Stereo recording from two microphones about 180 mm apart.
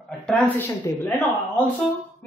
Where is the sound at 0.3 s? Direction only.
10° left (ahead or behind).